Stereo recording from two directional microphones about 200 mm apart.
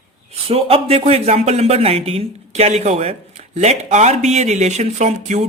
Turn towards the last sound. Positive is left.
turn(degrees=-35)  # may be behind; listen again after turning